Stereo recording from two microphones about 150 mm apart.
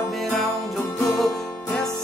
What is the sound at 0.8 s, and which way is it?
Music, 15° left (ahead or behind).